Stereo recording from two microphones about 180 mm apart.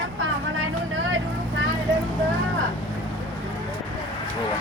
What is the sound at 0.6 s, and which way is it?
Vehicle, 90° right.